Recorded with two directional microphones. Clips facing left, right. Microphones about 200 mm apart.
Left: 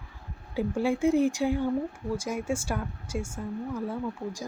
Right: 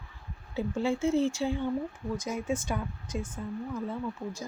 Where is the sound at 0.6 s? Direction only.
15° left (ahead or behind).